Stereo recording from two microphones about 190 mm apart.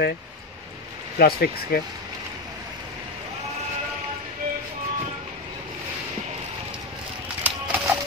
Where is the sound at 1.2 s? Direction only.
55° left (ahead or behind).